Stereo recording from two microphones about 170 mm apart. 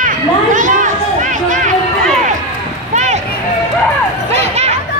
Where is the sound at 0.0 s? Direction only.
50° right (ahead or behind).